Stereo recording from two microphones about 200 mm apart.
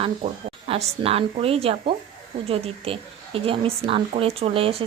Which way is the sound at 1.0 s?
30° right (ahead or behind).